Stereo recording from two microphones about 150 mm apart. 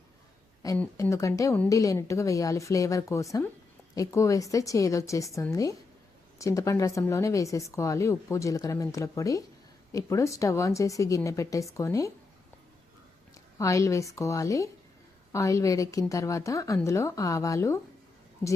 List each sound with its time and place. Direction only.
0.6 s speech: 25° left (ahead or behind)
13.6 s speech: 20° left (ahead or behind)